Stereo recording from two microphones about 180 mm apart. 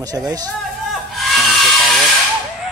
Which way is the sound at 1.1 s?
Centre (ahead or behind).